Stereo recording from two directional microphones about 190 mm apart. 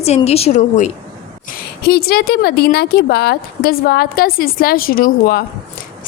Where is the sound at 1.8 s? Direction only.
55° left (ahead or behind).